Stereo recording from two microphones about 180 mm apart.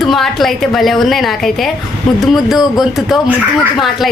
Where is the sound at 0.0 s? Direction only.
Centre (ahead or behind).